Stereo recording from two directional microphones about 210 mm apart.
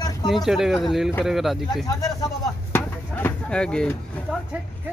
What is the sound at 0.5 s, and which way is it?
Speech, centre (ahead or behind).